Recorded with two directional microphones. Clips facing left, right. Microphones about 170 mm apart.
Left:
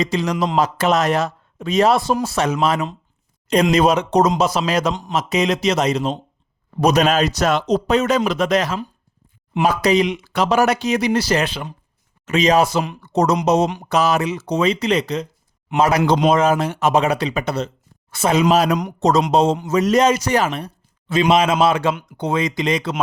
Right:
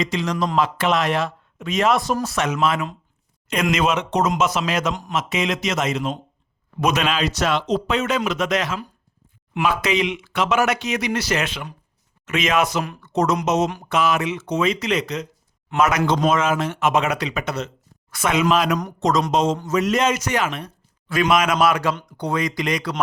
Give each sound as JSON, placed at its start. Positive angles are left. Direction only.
{"t": 0.0, "sound": "a man's voice", "side_deg": 35}